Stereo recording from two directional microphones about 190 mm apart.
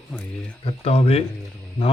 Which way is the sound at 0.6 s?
30° left (ahead or behind).